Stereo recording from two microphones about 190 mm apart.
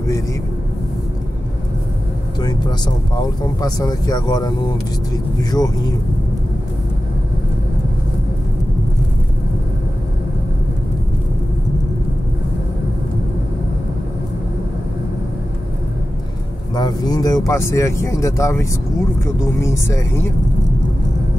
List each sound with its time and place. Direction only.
3.2 s speech: 20° left (ahead or behind)
16.7 s speech: 20° left (ahead or behind)